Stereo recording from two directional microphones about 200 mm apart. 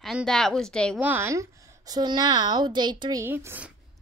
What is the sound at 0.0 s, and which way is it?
Speech, centre (ahead or behind).